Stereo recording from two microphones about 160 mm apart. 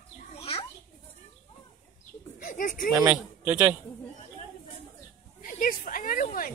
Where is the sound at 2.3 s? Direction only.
55° left (ahead or behind).